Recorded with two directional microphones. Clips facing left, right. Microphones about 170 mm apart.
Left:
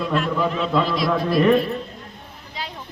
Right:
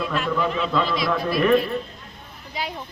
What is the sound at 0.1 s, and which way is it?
A man's voice, centre (ahead or behind).